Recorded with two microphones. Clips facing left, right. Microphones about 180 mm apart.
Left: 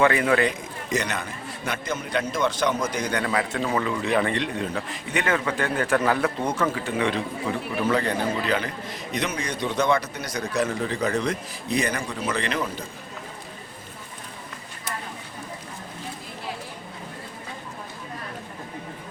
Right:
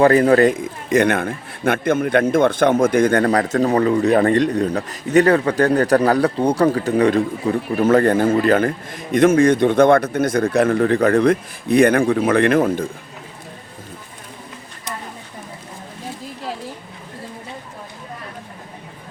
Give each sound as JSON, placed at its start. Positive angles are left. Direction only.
{"t": 0.0, "sound": "a man's voice", "side_deg": -40}